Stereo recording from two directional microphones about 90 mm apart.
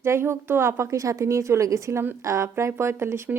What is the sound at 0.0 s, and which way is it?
A woman's voice, 30° right (ahead or behind).